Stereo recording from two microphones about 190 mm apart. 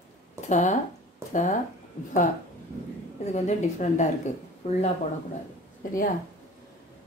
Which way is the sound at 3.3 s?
35° left (ahead or behind).